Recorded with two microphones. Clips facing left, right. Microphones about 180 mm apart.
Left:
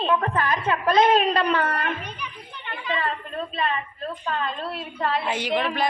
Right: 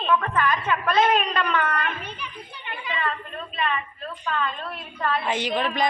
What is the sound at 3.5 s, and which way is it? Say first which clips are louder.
A woman's voice: right 2 dB; 35° left (ahead or behind).